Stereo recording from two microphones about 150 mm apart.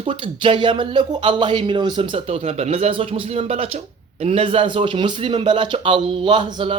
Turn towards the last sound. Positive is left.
turn(degrees=-35)  # may be behind; listen again after turning